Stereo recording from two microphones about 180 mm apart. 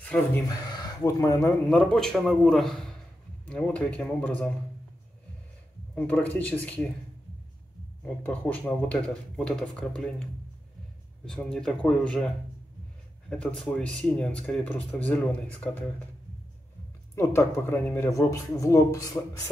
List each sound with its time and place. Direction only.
0.0 s speech: 10° left (ahead or behind)
0.5 s speech: 20° left (ahead or behind)
1.7 s speech: 5° left (ahead or behind)
5.9 s speech: 10° left (ahead or behind)
8.0 s speech: 10° left (ahead or behind)
11.2 s speech: 5° left (ahead or behind)
13.3 s speech: 5° left (ahead or behind)
17.1 s speech: 15° left (ahead or behind)